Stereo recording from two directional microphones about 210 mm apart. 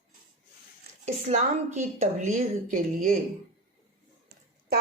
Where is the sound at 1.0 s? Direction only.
35° right (ahead or behind).